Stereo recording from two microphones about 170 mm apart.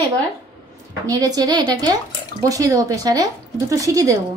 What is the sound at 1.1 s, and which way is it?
Speech, 20° right (ahead or behind).